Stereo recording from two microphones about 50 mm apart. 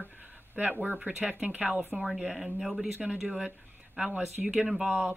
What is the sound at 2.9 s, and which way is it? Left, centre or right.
Speech, right.